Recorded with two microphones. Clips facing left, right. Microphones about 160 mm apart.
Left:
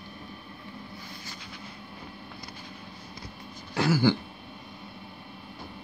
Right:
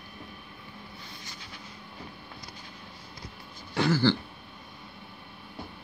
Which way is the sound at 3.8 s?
10° left (ahead or behind).